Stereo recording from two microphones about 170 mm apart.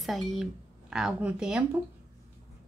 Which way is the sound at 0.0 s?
Centre (ahead or behind).